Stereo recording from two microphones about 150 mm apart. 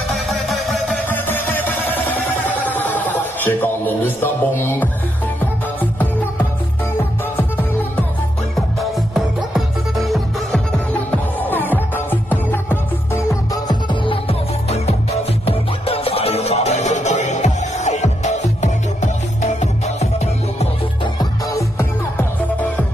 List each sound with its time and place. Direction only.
0.1 s music: centre (ahead or behind)
1.0 s music: 15° left (ahead or behind)
9.1 s music: centre (ahead or behind)
10.9 s music: 10° left (ahead or behind); by 20.6 s 45° left (ahead or behind)
21.0 s music: 25° left (ahead or behind)